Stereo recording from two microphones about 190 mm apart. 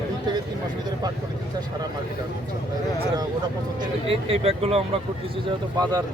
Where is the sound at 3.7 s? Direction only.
30° right (ahead or behind).